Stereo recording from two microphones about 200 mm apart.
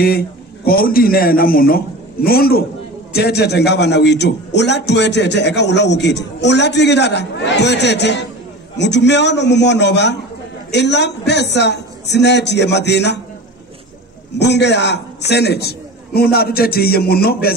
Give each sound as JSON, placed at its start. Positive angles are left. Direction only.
{"t": 0.7, "sound": "a man's voice", "side_deg": 45}
{"t": 14.4, "sound": "a man's voice", "side_deg": 60}